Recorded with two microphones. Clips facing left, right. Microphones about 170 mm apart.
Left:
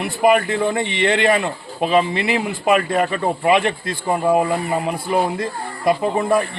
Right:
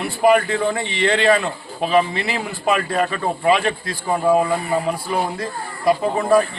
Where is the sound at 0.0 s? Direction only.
20° left (ahead or behind).